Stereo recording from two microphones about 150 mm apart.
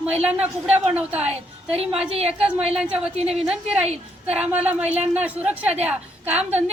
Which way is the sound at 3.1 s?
45° right (ahead or behind).